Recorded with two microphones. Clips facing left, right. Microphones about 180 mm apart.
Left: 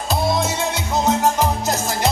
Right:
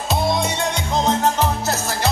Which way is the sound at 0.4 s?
5° left (ahead or behind).